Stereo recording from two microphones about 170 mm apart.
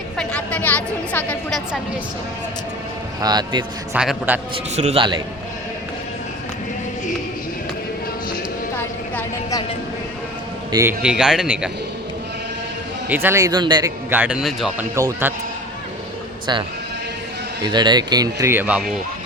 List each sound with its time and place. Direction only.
0.2 s a sound: 10° left (ahead or behind)
3.2 s speech: 25° right (ahead or behind)
3.9 s speech: 5° right (ahead or behind)
4.5 s a man's voice: 40° right (ahead or behind)
8.8 s a sound: 15° left (ahead or behind)
10.7 s a man's voice: 20° right (ahead or behind)
11.0 s speech: 5° right (ahead or behind)
13.1 s speech: 10° right (ahead or behind)
14.1 s speech: 10° right (ahead or behind)
14.9 s speech: 15° right (ahead or behind)
16.5 s speech: 25° right (ahead or behind)